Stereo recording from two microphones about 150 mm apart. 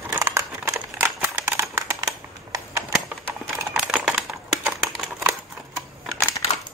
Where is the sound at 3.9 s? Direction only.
5° right (ahead or behind).